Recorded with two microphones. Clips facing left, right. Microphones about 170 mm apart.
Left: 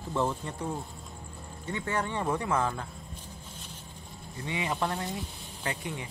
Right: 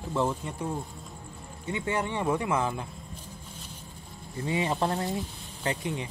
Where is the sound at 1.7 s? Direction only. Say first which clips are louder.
Right 2 dB; 15° right (ahead or behind).